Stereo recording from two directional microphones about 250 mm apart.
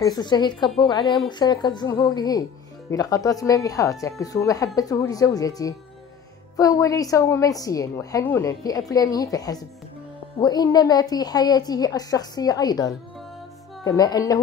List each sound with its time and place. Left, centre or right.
0.0 s a woman's voice: centre